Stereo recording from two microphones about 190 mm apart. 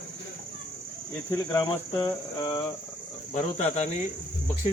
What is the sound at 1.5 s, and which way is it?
Cricket, 20° left (ahead or behind).